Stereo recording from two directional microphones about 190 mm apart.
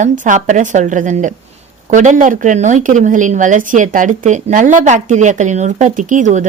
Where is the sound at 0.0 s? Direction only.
40° right (ahead or behind).